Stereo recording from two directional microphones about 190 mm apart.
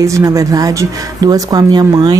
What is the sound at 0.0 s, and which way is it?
Speech, 15° right (ahead or behind).